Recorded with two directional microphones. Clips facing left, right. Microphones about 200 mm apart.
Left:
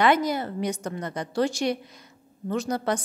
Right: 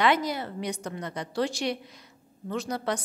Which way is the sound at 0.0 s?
50° left (ahead or behind).